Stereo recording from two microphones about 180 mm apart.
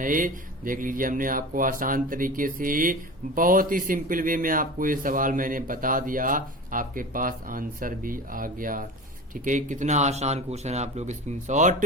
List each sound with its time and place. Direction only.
0.0 s speech: 50° right (ahead or behind)